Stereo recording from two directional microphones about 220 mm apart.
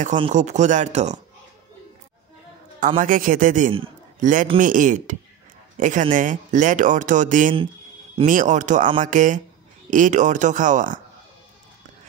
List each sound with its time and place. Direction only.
0.0 s speech: 35° right (ahead or behind)
3.0 s speech: 35° right (ahead or behind)
3.7 s a sound: 25° right (ahead or behind)
4.6 s a man's voice: 35° right (ahead or behind)